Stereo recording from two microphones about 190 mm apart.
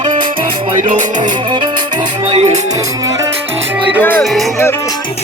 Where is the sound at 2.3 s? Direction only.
35° right (ahead or behind).